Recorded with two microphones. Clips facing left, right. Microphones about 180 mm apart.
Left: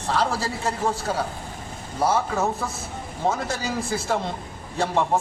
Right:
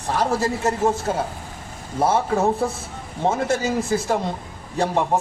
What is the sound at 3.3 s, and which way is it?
Speech, 50° right (ahead or behind).